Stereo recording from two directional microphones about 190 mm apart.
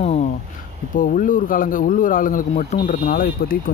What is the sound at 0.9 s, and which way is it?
Speech, 45° left (ahead or behind).